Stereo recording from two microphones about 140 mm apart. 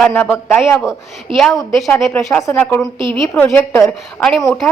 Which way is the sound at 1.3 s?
35° right (ahead or behind).